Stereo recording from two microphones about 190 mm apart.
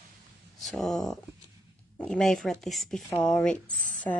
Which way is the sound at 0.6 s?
Centre (ahead or behind).